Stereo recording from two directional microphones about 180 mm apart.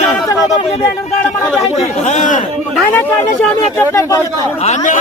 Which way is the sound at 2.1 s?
45° left (ahead or behind).